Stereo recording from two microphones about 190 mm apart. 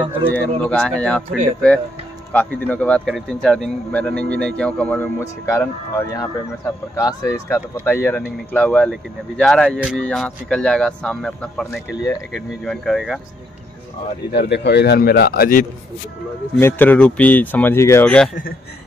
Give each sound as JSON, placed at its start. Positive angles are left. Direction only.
{"t": 0.3, "sound": "speech", "side_deg": 5}
{"t": 14.3, "sound": "a man's voice", "side_deg": 60}
{"t": 16.5, "sound": "speech", "side_deg": 10}